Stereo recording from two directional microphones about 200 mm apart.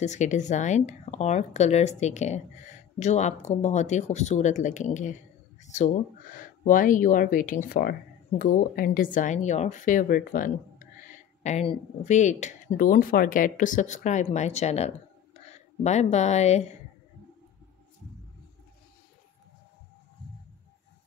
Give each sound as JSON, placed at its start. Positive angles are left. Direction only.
{"t": 0.0, "sound": "a woman's voice", "side_deg": 35}